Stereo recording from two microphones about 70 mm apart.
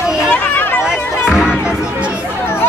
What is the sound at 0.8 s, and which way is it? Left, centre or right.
Speech, centre.